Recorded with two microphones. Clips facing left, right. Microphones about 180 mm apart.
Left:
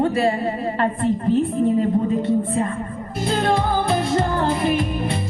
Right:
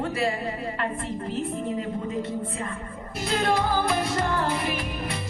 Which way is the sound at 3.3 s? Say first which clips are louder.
Left 4 dB; 30° left (ahead or behind).